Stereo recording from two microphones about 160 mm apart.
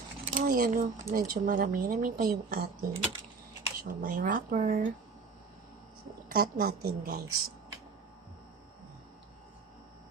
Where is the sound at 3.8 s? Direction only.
60° right (ahead or behind).